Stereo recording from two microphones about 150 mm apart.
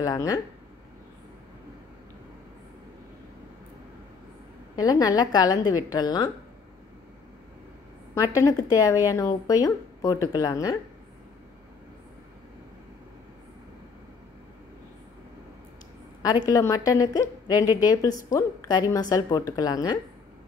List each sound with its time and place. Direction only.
0.0 s speech: 25° left (ahead or behind)
4.7 s speech: 25° left (ahead or behind)
8.4 s speech: 20° left (ahead or behind)
16.2 s speech: 25° left (ahead or behind)